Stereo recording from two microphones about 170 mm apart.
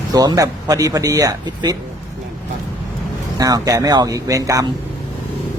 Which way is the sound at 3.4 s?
20° right (ahead or behind).